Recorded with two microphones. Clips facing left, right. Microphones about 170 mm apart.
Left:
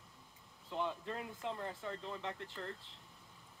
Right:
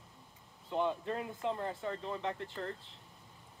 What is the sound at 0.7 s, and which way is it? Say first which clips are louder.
Speech: right 6 dB; 55° right (ahead or behind).